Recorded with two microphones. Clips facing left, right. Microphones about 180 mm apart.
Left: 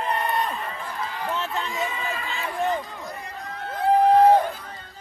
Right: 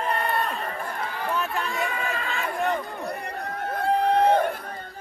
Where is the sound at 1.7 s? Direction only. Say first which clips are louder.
Even; 20° left (ahead or behind).